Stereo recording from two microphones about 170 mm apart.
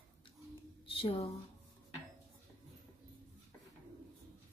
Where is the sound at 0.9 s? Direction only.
30° left (ahead or behind).